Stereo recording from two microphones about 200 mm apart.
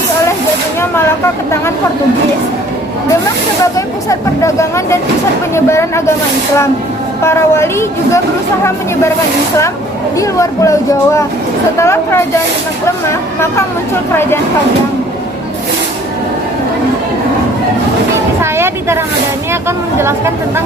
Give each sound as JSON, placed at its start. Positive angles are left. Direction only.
{"t": 0.8, "sound": "vehicle", "side_deg": 10}
{"t": 3.6, "sound": "speech", "side_deg": 15}
{"t": 7.3, "sound": "speech", "side_deg": 15}
{"t": 10.2, "sound": "speech", "side_deg": 15}
{"t": 18.5, "sound": "a sound", "side_deg": -10}
{"t": 19.6, "sound": "a woman's voice", "side_deg": -15}